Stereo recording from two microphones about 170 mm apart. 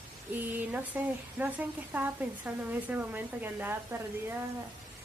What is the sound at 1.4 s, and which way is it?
Speech, 10° right (ahead or behind).